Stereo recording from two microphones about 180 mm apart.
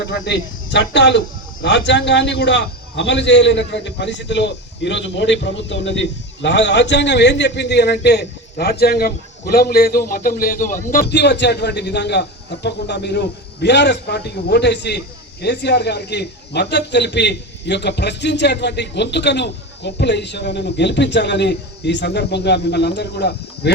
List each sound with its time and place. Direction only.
0.0 s a man's voice: 75° left (ahead or behind); by 11.0 s 50° left (ahead or behind)
11.0 s a man's voice: 70° left (ahead or behind)